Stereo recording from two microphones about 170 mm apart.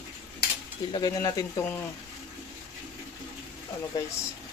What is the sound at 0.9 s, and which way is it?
Speech, 25° left (ahead or behind).